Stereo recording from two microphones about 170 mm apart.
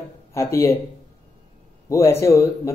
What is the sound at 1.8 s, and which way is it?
Speech, 15° left (ahead or behind).